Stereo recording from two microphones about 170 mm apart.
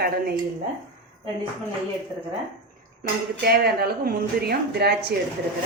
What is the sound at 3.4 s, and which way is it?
A woman's voice, 65° right (ahead or behind).